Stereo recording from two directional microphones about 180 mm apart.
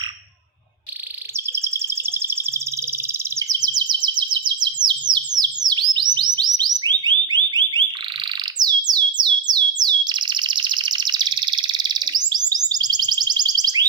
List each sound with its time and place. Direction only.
1.5 s bird vocalization: 15° right (ahead or behind)
3.1 s chirp: 20° right (ahead or behind)
7.5 s alarm: 25° right (ahead or behind)
8.5 s bird: 20° right (ahead or behind)